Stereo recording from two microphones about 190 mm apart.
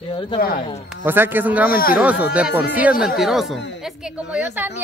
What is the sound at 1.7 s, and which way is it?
Speech, 50° left (ahead or behind).